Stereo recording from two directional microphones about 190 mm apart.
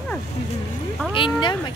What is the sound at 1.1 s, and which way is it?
Speech, 25° left (ahead or behind).